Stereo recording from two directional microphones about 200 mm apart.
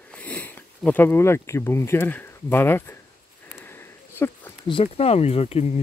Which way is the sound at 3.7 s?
10° left (ahead or behind).